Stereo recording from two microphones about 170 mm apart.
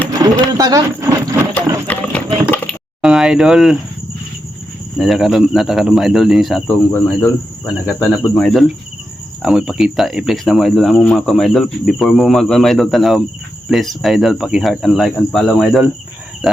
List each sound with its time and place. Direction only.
0.2 s speech: 20° right (ahead or behind)
1.9 s a sound: 10° left (ahead or behind)
3.0 s speech: 5° right (ahead or behind)
4.9 s speech: centre (ahead or behind)
6.9 s speech: 10° left (ahead or behind)